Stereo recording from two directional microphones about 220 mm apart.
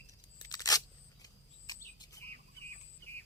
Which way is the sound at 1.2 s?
15° left (ahead or behind).